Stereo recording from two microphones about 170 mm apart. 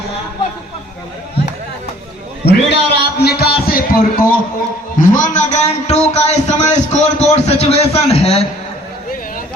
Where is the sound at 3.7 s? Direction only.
60° left (ahead or behind); by 8.5 s 35° left (ahead or behind).